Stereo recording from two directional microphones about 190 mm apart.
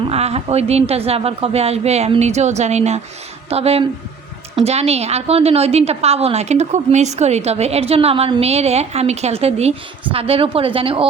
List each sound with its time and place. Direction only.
0.1 s a woman's voice: 35° right (ahead or behind)